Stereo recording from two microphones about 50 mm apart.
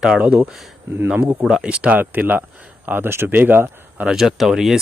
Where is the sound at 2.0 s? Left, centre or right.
Right.